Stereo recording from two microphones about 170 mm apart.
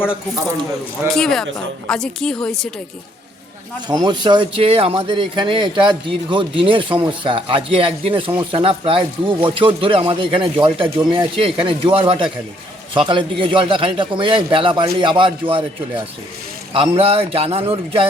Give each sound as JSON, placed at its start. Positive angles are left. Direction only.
{"t": 1.0, "sound": "a woman's voice", "side_deg": 5}
{"t": 3.8, "sound": "speech", "side_deg": -25}
{"t": 16.7, "sound": "speech", "side_deg": -30}